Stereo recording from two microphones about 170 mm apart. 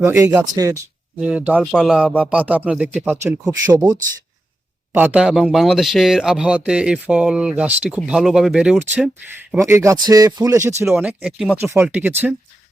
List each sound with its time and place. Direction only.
0.0 s speech: 20° right (ahead or behind)
1.2 s speech: 5° right (ahead or behind)
1.6 s speech: 5° left (ahead or behind)
4.9 s speech: 10° right (ahead or behind)
9.5 s speech: 15° right (ahead or behind)
10.8 s speech: 5° right (ahead or behind)